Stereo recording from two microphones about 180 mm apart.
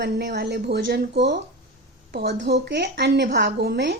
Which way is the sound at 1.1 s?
75° right (ahead or behind).